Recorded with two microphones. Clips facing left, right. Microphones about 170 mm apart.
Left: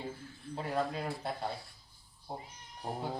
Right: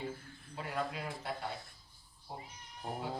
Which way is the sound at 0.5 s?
35° left (ahead or behind).